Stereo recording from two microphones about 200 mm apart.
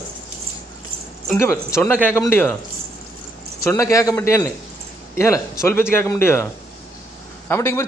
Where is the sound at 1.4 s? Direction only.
15° left (ahead or behind).